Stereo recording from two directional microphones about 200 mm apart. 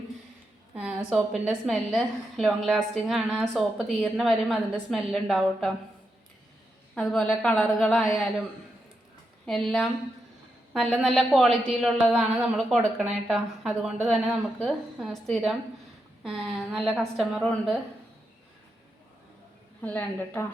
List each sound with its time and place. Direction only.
0.7 s a man's voice: 5° right (ahead or behind)
6.9 s a man's voice: 5° left (ahead or behind)
9.5 s a man's voice: centre (ahead or behind)
19.8 s a woman's voice: 5° left (ahead or behind)